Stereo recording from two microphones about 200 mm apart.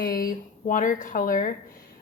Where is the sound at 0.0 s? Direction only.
45° left (ahead or behind).